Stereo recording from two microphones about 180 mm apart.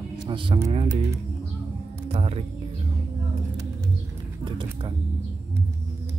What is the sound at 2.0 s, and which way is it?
Music, 35° right (ahead or behind).